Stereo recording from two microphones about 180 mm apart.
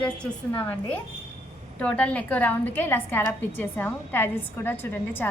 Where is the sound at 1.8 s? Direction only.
5° left (ahead or behind).